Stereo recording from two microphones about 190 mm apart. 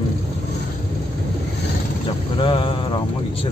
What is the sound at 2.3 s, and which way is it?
Vehicle, 30° left (ahead or behind).